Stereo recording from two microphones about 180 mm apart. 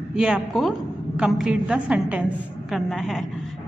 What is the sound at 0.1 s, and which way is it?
A woman's voice, 5° right (ahead or behind).